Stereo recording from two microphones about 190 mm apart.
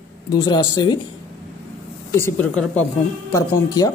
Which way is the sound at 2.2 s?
5° left (ahead or behind).